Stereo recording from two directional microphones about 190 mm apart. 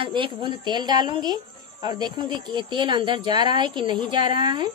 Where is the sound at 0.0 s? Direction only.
25° right (ahead or behind).